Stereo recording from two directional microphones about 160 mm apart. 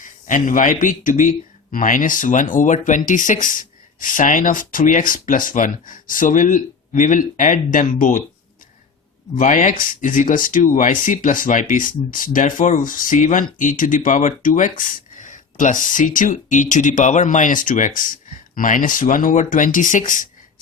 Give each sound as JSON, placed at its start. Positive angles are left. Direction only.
{"t": 0.0, "sound": "speech", "side_deg": 55}
{"t": 9.4, "sound": "speech", "side_deg": 50}